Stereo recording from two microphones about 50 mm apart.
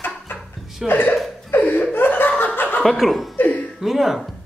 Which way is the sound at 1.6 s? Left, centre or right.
Left.